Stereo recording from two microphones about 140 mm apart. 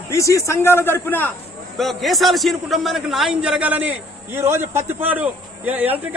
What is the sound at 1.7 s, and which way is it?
A man's voice, centre (ahead or behind).